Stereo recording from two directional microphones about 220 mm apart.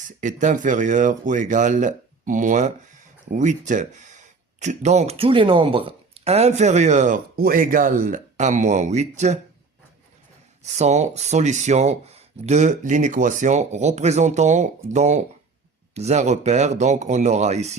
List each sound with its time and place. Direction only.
0.2 s speech: 35° right (ahead or behind)
10.6 s speech: 30° right (ahead or behind)